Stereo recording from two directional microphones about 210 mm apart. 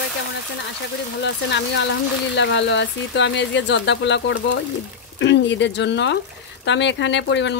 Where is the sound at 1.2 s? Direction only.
55° left (ahead or behind).